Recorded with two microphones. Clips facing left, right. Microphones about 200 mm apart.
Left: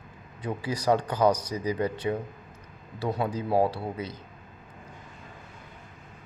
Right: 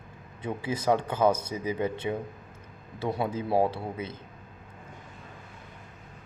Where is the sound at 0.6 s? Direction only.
25° right (ahead or behind).